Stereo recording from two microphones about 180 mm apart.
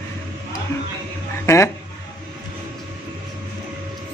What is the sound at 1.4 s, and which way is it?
Speech, 15° left (ahead or behind).